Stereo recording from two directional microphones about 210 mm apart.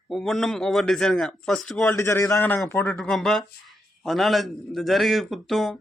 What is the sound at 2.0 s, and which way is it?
Speech, 15° left (ahead or behind).